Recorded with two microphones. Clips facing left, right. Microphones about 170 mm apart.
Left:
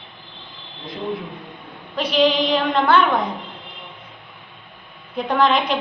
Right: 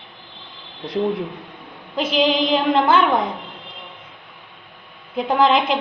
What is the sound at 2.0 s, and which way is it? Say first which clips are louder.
Female singing: left 1 dB; 25° right (ahead or behind).